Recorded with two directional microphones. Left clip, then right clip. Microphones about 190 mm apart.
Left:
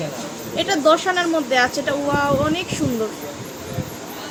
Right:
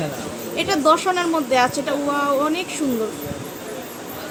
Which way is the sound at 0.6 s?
Centre (ahead or behind).